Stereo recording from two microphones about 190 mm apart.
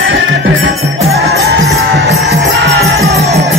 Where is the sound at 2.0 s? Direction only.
65° right (ahead or behind).